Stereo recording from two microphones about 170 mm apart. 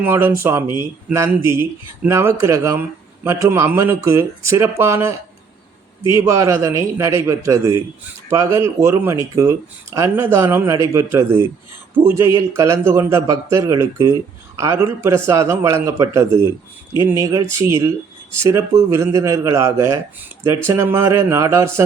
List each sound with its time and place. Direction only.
0.0 s speech: 15° right (ahead or behind)
6.1 s speech: 15° right (ahead or behind)